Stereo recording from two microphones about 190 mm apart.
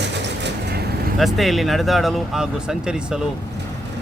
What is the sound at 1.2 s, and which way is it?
Speech, centre (ahead or behind).